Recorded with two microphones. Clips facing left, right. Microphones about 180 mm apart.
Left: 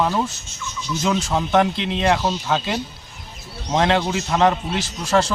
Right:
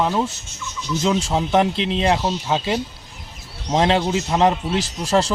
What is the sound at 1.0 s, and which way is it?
Speech, 25° right (ahead or behind).